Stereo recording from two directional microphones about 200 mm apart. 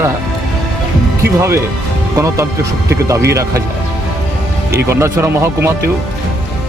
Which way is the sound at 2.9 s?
15° right (ahead or behind).